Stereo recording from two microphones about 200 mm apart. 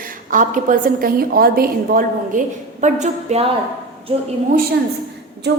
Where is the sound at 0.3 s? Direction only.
40° right (ahead or behind).